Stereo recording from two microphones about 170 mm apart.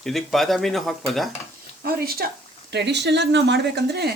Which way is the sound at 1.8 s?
65° right (ahead or behind).